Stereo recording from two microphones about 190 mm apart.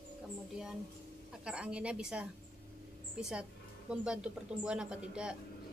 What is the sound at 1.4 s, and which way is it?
A woman's voice, 5° right (ahead or behind).